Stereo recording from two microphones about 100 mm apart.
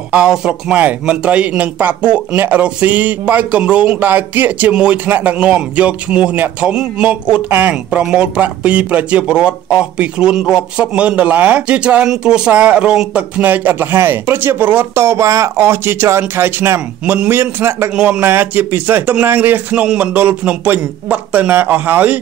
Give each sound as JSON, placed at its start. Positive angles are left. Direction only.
{"t": 0.1, "sound": "a man's voice", "side_deg": -5}
{"t": 13.4, "sound": "speech", "side_deg": -20}
{"t": 17.0, "sound": "a man's voice", "side_deg": -10}
{"t": 17.3, "sound": "speech", "side_deg": -25}
{"t": 17.9, "sound": "a man's voice", "side_deg": -5}
{"t": 18.2, "sound": "a man's voice", "side_deg": -20}